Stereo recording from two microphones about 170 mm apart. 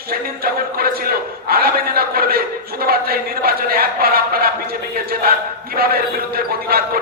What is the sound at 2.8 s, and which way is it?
Speech, 65° right (ahead or behind).